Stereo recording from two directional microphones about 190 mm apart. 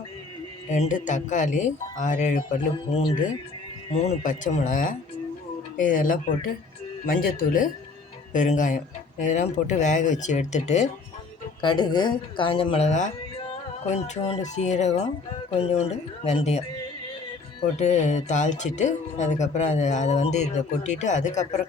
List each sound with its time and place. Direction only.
0.7 s speech: 40° left (ahead or behind)
2.7 s speech: 30° left (ahead or behind)
11.6 s speech: 25° left (ahead or behind)
17.7 s speech: 35° left (ahead or behind)